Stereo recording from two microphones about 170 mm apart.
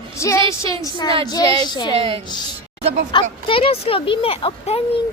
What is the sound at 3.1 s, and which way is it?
Speech, 30° left (ahead or behind).